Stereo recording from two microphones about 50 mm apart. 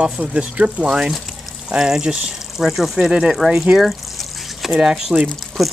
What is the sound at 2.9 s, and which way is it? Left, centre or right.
Speech, centre.